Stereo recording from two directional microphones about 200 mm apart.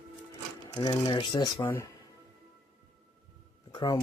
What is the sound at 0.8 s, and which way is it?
Speech, 25° left (ahead or behind).